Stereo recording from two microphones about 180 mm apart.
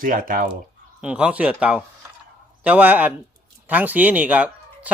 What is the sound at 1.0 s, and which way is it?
Speech, 5° right (ahead or behind).